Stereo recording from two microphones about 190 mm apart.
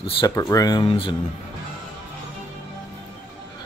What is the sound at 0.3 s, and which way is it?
Speech, 15° left (ahead or behind).